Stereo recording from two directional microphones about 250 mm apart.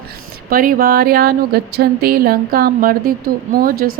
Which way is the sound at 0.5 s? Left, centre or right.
Right.